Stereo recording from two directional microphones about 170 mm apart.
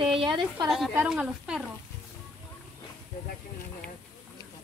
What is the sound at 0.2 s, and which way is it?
Speech, 30° right (ahead or behind).